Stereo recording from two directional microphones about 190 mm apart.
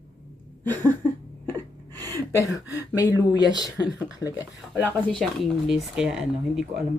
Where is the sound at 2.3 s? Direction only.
15° left (ahead or behind).